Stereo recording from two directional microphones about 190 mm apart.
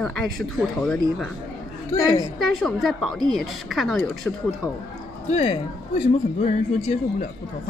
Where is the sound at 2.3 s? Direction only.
Centre (ahead or behind).